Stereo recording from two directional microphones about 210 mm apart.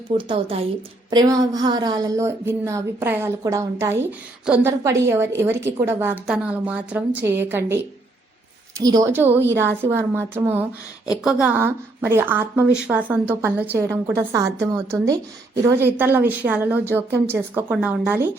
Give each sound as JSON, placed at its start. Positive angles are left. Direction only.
{"t": 0.1, "sound": "a woman's voice", "side_deg": -25}
{"t": 8.8, "sound": "a woman's voice", "side_deg": -15}